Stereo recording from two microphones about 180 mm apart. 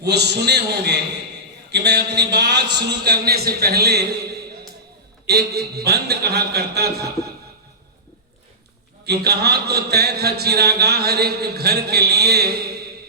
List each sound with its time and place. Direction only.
0.0 s a man's voice: 65° right (ahead or behind)
5.2 s speech: 60° right (ahead or behind)
9.0 s speech: 65° right (ahead or behind)